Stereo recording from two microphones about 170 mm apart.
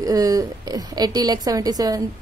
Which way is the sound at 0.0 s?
20° right (ahead or behind).